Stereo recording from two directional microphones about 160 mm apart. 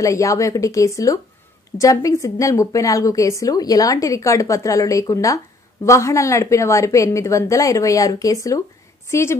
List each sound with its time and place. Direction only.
0.0 s a woman's voice: 20° left (ahead or behind)